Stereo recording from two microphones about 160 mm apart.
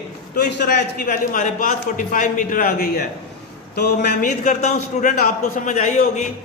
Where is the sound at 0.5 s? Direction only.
90° left.